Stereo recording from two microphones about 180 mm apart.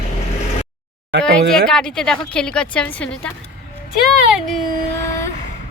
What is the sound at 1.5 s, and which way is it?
A woman's voice, 5° left (ahead or behind).